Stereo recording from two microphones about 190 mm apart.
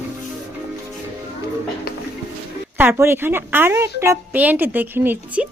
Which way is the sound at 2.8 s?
10° right (ahead or behind).